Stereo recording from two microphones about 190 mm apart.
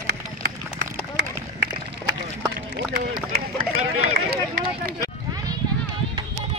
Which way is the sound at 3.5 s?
30° right (ahead or behind).